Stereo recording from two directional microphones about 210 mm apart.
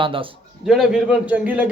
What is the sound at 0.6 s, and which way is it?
Speech, 5° right (ahead or behind).